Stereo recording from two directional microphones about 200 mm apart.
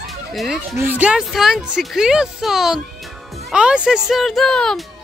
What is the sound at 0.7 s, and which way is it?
Speech, 10° right (ahead or behind).